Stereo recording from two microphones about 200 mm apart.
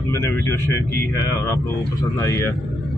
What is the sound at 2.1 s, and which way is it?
Speech, 15° left (ahead or behind).